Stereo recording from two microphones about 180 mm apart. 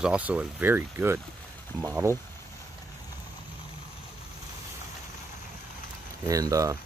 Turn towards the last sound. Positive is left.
turn(degrees=-20)  # may be behind; listen again after turning